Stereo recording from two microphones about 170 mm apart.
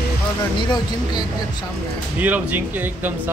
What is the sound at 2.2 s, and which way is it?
Speech, 10° right (ahead or behind).